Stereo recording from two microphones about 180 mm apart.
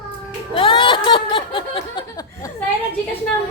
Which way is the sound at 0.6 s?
30° left (ahead or behind).